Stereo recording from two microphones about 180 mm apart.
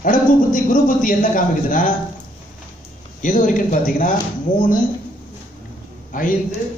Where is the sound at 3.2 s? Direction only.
45° left (ahead or behind).